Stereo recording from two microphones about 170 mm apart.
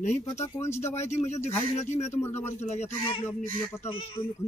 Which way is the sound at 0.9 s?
40° left (ahead or behind).